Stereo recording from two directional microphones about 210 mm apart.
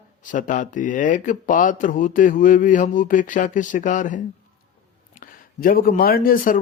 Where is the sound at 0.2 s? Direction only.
40° left (ahead or behind).